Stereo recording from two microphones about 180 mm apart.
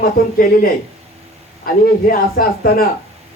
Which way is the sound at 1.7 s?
55° left (ahead or behind).